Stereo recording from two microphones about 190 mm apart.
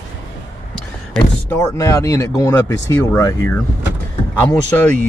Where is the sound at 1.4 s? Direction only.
15° left (ahead or behind).